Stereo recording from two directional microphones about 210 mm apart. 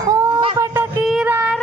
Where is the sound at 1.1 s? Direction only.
5° right (ahead or behind).